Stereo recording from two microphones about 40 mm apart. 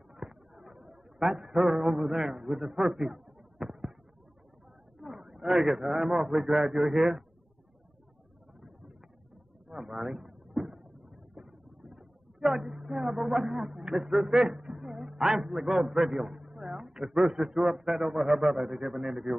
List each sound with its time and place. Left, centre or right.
0.1 s a sound: centre
1.2 s a man's voice: centre
1.8 s speech: centre
2.9 s a sound: centre
4.9 s a man's voice: centre
8.5 s a sound: centre
11.3 s vehicle: centre
12.4 s a woman's voice: centre
12.6 s a man's voice: centre
16.3 s a man's voice: centre